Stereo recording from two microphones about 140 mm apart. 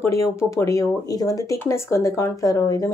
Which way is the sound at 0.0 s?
20° left (ahead or behind).